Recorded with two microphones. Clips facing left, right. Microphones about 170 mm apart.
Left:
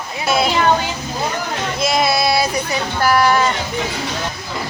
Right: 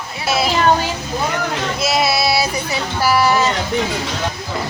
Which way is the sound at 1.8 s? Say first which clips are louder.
Left 1 dB; 5° right (ahead or behind).